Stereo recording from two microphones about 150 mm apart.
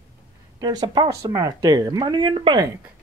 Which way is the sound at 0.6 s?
30° right (ahead or behind).